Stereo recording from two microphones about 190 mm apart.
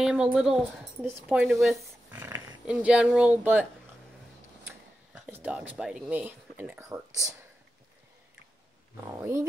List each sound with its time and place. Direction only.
0.0 s speech: centre (ahead or behind)
2.0 s dog: 15° right (ahead or behind)
2.6 s speech: 5° right (ahead or behind)
4.6 s speech: 10° right (ahead or behind)
9.2 s speech: 15° right (ahead or behind)